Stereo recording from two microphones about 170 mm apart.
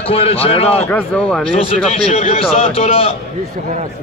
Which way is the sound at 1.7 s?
35° left (ahead or behind).